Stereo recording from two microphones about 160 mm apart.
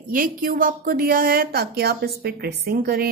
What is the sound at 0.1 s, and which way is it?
A woman's voice, 60° right (ahead or behind).